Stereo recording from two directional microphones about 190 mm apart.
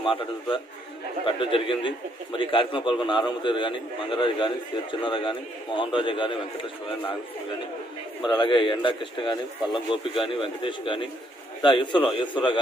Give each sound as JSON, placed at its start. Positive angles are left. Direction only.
{"t": 0.0, "sound": "a man's voice", "side_deg": 30}
{"t": 8.3, "sound": "a man's voice", "side_deg": 25}